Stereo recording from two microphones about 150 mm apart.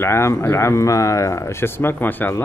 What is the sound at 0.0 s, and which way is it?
Speech, 15° left (ahead or behind).